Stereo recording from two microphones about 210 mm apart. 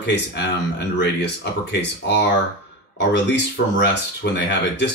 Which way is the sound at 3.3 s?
55° left (ahead or behind).